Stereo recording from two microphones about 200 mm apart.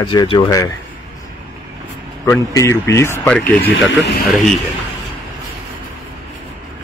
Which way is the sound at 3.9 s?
60° left (ahead or behind).